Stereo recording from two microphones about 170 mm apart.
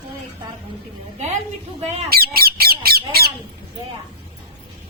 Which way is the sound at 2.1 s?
60° right (ahead or behind).